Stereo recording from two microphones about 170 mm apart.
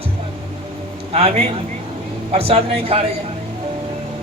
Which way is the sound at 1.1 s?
35° right (ahead or behind).